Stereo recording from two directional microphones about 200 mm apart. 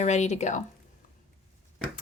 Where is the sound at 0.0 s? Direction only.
35° left (ahead or behind).